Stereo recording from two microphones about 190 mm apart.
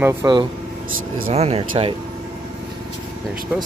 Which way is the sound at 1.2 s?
35° right (ahead or behind).